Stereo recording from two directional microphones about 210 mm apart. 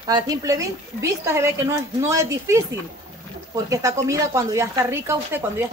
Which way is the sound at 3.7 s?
15° right (ahead or behind).